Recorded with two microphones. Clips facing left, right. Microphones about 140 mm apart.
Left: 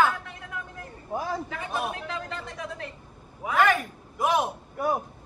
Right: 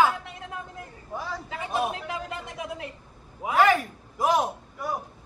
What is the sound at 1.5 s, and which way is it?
A man's voice, 20° right (ahead or behind).